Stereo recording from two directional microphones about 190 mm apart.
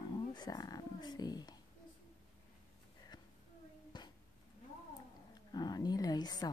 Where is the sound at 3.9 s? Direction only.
25° left (ahead or behind).